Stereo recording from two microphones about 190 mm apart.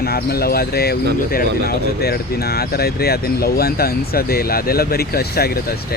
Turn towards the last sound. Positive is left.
turn(degrees=55)  # may be behind; listen again after turning